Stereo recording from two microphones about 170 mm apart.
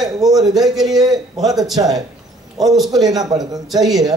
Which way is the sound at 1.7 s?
20° right (ahead or behind).